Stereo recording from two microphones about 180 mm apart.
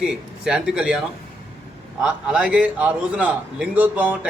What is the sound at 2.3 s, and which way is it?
A man's voice, 5° right (ahead or behind).